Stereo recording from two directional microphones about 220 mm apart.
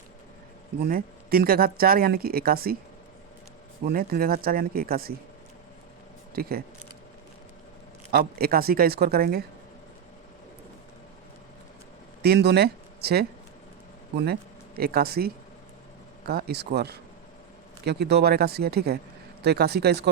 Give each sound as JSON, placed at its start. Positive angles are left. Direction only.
{"t": 0.8, "sound": "speech", "side_deg": -45}
{"t": 3.8, "sound": "speech", "side_deg": -45}
{"t": 6.3, "sound": "speech", "side_deg": -45}
{"t": 8.1, "sound": "speech", "side_deg": -45}
{"t": 12.2, "sound": "speech", "side_deg": -45}
{"t": 14.8, "sound": "speech", "side_deg": -45}